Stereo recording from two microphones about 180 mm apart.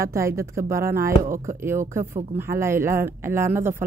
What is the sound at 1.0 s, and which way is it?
Speech, 50° right (ahead or behind).